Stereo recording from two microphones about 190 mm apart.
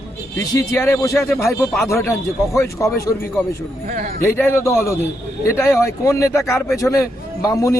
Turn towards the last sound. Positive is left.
turn(degrees=15)  # may be behind; listen again after turning